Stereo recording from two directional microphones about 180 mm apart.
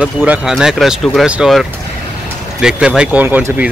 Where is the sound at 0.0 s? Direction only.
5° right (ahead or behind).